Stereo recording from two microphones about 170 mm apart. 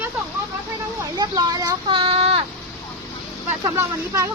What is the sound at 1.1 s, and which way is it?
Speech, 20° right (ahead or behind).